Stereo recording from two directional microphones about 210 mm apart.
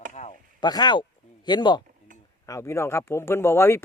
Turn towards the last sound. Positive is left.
turn(degrees=10)  # may be behind; listen again after turning